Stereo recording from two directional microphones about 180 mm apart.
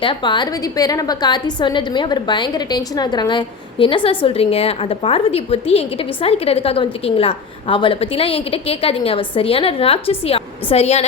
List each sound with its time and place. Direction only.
0.0 s a woman's voice: 25° left (ahead or behind)